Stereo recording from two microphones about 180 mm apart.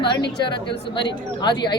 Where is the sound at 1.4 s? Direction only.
25° left (ahead or behind).